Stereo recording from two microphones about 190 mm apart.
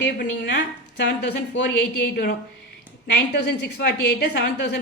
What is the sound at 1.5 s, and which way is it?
A woman's voice, 65° left (ahead or behind).